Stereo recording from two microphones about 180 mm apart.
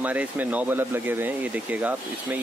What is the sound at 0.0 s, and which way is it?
Speech, 10° right (ahead or behind).